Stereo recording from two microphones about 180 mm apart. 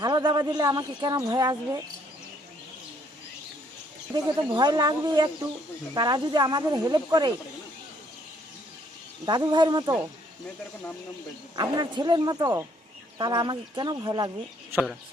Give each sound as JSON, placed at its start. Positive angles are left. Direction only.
{"t": 0.0, "sound": "speech", "side_deg": -25}
{"t": 4.1, "sound": "speech", "side_deg": -25}
{"t": 9.2, "sound": "speech", "side_deg": -25}
{"t": 11.5, "sound": "speech", "side_deg": -25}